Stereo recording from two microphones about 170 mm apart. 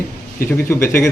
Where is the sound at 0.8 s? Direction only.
15° left (ahead or behind).